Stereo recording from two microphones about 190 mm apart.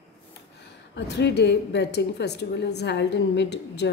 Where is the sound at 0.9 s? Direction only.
65° left (ahead or behind).